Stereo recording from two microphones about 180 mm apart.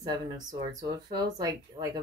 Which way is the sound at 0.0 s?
20° right (ahead or behind).